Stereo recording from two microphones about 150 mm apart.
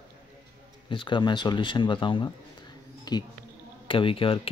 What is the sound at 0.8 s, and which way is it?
Speech, 30° left (ahead or behind).